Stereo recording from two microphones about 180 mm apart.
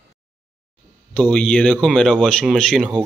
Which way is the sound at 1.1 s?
5° left (ahead or behind).